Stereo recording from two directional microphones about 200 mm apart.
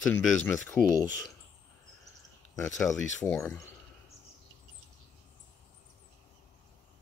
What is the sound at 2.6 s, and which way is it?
Speech, 15° left (ahead or behind).